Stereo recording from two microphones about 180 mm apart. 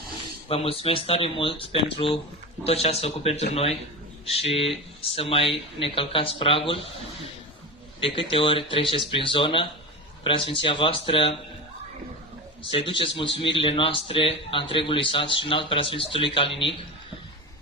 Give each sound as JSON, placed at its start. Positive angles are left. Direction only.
{"t": 0.1, "sound": "speech", "side_deg": 30}
{"t": 8.0, "sound": "a man's voice", "side_deg": 30}
{"t": 12.7, "sound": "a man's voice", "side_deg": 30}